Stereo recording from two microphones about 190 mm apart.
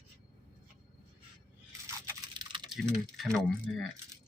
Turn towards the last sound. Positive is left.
turn(degrees=0)  # may be behind; listen again after turning